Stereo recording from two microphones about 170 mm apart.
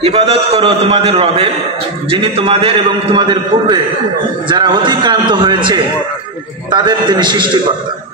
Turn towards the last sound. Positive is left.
turn(degrees=-25)  # may be behind; listen again after turning